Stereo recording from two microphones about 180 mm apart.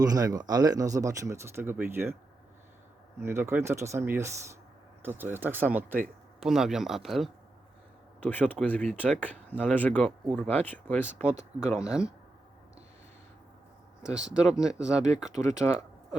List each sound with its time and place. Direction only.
0.0 s speech: 20° right (ahead or behind)
3.2 s speech: 15° right (ahead or behind); by 11.1 s 10° left (ahead or behind)
11.6 s speech: 5° right (ahead or behind)
14.0 s speech: 5° right (ahead or behind)
15.6 s speech: 10° left (ahead or behind)